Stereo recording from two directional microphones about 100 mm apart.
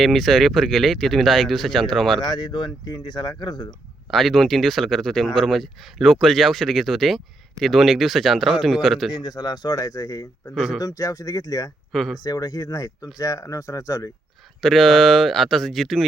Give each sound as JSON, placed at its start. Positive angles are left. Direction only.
{"t": 0.0, "sound": "speech", "side_deg": 0}
{"t": 2.2, "sound": "speech", "side_deg": 45}
{"t": 4.1, "sound": "speech", "side_deg": 0}
{"t": 9.1, "sound": "speech", "side_deg": 40}
{"t": 10.5, "sound": "speech", "side_deg": -5}
{"t": 10.8, "sound": "speech", "side_deg": 35}
{"t": 11.9, "sound": "speech", "side_deg": 0}
{"t": 12.2, "sound": "speech", "side_deg": 40}
{"t": 14.6, "sound": "speech", "side_deg": 0}